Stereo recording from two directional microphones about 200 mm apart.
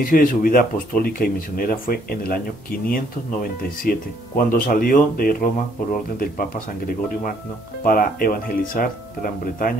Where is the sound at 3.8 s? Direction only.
45° left (ahead or behind).